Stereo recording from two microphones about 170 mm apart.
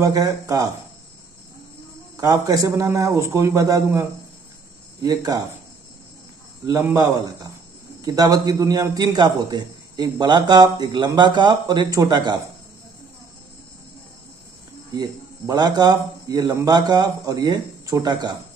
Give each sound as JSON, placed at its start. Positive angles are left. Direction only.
{"t": 0.0, "sound": "a man's voice", "side_deg": -20}
{"t": 2.1, "sound": "a man's voice", "side_deg": -20}
{"t": 5.0, "sound": "a man's voice", "side_deg": -20}
{"t": 6.6, "sound": "speech", "side_deg": -15}
{"t": 8.0, "sound": "a man's voice", "side_deg": -20}
{"t": 14.9, "sound": "a man's voice", "side_deg": -20}